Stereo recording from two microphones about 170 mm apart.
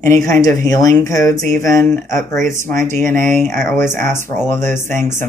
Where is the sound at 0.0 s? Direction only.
15° left (ahead or behind).